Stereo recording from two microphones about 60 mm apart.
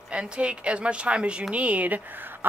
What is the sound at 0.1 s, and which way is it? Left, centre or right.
Speech, centre.